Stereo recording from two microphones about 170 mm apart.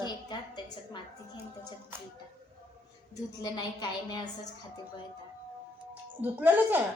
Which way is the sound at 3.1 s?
25° left (ahead or behind).